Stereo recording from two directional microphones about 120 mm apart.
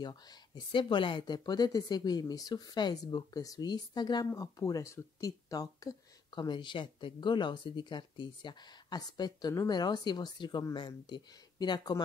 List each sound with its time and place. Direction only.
0.0 s speech: 35° left (ahead or behind)